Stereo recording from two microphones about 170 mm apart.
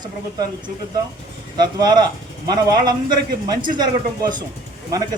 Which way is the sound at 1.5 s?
25° right (ahead or behind).